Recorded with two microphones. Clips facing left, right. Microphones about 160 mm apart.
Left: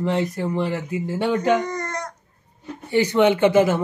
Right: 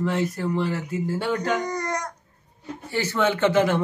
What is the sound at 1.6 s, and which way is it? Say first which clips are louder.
Baby cry: even; 15° right (ahead or behind).